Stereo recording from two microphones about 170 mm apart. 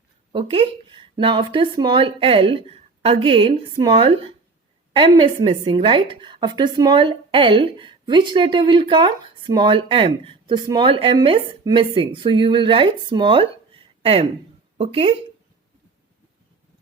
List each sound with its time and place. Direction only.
0.3 s a woman's voice: 30° right (ahead or behind)